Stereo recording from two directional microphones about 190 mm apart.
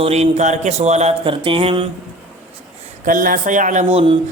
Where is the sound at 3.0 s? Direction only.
45° right (ahead or behind).